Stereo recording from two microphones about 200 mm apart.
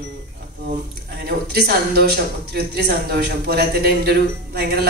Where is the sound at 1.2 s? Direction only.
50° right (ahead or behind).